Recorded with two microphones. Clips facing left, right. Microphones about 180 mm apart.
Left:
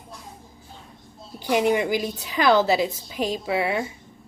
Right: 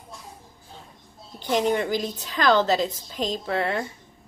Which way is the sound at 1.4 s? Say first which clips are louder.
Left 2 dB; 10° left (ahead or behind).